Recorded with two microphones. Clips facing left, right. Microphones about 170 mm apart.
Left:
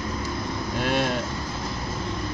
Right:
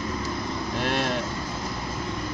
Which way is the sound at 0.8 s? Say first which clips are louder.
Left 3 dB; centre (ahead or behind).